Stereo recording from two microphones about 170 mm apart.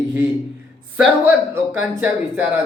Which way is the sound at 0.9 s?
10° right (ahead or behind).